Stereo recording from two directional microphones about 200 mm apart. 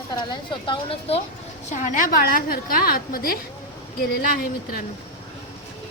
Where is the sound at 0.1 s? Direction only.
20° left (ahead or behind).